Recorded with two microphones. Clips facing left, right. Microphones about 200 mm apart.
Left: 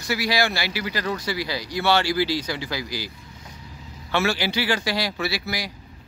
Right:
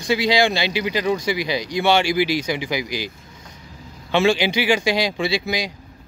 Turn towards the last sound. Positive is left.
turn(degrees=-20)  # may be behind; listen again after turning